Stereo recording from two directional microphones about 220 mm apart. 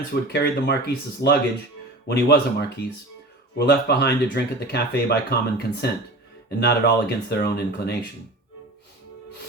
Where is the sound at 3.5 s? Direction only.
50° left (ahead or behind).